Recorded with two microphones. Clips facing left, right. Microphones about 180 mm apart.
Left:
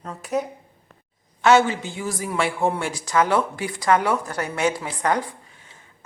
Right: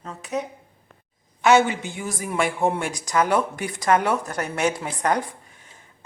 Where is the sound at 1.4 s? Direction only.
15° right (ahead or behind).